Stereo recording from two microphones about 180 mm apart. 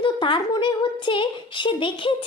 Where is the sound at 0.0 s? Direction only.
25° left (ahead or behind).